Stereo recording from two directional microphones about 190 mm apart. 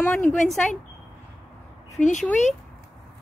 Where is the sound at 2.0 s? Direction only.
40° left (ahead or behind).